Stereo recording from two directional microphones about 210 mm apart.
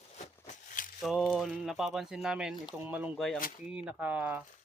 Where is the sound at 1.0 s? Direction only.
Centre (ahead or behind).